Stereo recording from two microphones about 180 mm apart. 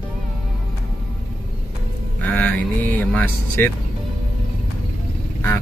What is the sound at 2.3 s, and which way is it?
Vehicle, 10° left (ahead or behind).